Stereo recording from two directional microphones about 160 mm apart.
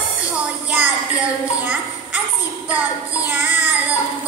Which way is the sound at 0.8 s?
10° right (ahead or behind).